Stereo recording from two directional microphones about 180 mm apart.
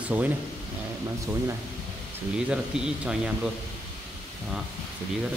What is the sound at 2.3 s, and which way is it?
Speech, 5° right (ahead or behind).